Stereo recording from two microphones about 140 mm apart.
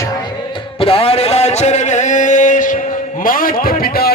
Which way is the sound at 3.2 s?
85° left.